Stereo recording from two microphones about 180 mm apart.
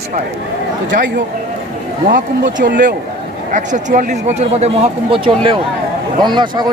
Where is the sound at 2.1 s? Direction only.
75° right (ahead or behind).